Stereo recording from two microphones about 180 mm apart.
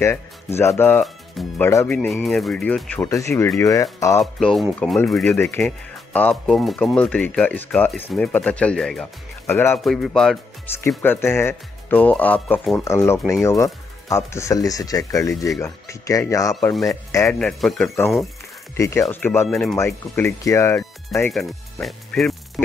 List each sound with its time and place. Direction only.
0.0 s speech: 15° left (ahead or behind)
2.0 s speech: centre (ahead or behind); by 4.2 s 20° left (ahead or behind)
4.2 s speech: centre (ahead or behind)
9.8 s speech: centre (ahead or behind); by 16.5 s 20° left (ahead or behind)
16.7 s speech: centre (ahead or behind)
17.1 s speech: 15° left (ahead or behind)
17.4 s speech: 5° left (ahead or behind)
18.8 s speech: 15° left (ahead or behind)
21.3 s speech: centre (ahead or behind)